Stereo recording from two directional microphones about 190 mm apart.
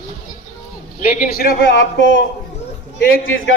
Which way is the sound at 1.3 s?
50° left (ahead or behind).